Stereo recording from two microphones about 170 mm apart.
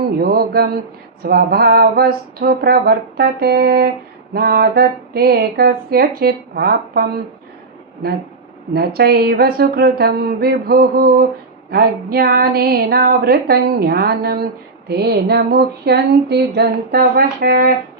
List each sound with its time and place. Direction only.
0.2 s speech: 60° right (ahead or behind)
8.7 s speech: 65° right (ahead or behind)
14.8 s a sound: 70° right (ahead or behind)